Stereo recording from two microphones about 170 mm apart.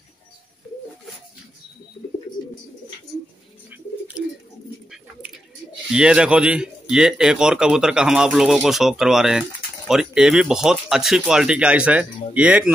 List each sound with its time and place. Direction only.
3.7 s bird: 10° right (ahead or behind)
5.9 s speech: 5° right (ahead or behind)